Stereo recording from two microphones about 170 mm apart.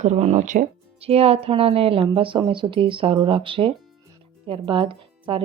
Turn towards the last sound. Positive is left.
turn(degrees=-30)  # may be behind; listen again after turning